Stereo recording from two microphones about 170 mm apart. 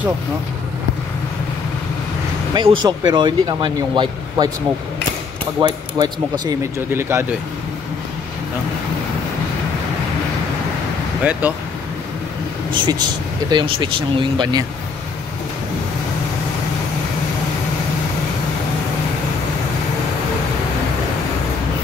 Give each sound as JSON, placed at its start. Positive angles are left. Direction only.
{"t": 2.5, "sound": "speech", "side_deg": -25}
{"t": 5.6, "sound": "speech", "side_deg": -25}
{"t": 6.9, "sound": "speech", "side_deg": -15}
{"t": 11.4, "sound": "speech", "side_deg": -10}
{"t": 12.7, "sound": "speech", "side_deg": -25}